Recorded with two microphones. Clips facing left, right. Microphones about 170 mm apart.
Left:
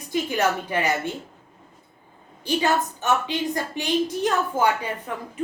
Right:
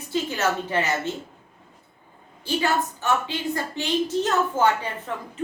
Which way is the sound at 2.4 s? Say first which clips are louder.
Left 2 dB; 15° left (ahead or behind).